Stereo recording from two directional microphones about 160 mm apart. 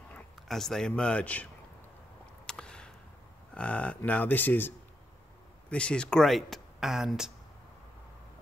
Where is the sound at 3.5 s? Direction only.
10° left (ahead or behind).